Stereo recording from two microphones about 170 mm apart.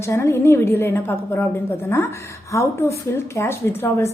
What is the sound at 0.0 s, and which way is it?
A woman's voice, 15° left (ahead or behind).